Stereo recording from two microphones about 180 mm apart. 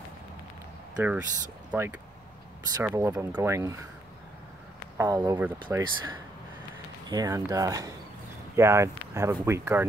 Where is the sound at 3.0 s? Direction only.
10° right (ahead or behind).